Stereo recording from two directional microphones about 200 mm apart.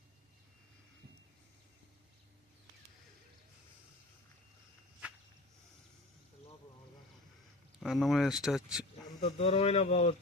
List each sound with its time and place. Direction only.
7.8 s speech: centre (ahead or behind)
9.2 s speech: 30° left (ahead or behind)